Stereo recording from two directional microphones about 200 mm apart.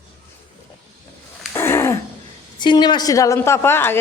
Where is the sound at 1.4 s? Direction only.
10° left (ahead or behind).